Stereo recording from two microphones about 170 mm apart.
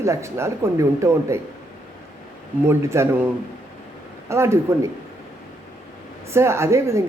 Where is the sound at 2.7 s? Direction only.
15° right (ahead or behind).